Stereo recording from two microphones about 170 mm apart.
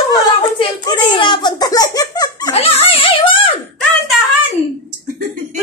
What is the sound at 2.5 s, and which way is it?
Speech, 35° left (ahead or behind).